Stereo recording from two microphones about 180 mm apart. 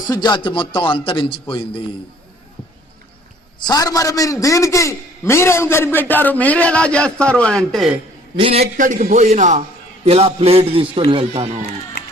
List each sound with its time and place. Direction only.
0.1 s a man's voice: 25° left (ahead or behind)
3.7 s a man's voice: 20° left (ahead or behind); by 7.9 s centre (ahead or behind)
8.4 s a man's voice: 30° right (ahead or behind)